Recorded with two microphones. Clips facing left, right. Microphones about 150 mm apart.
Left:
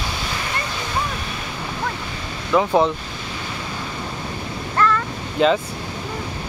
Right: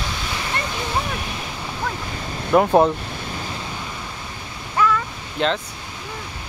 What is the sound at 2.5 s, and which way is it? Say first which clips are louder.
Speech: right 2 dB; 45° right (ahead or behind).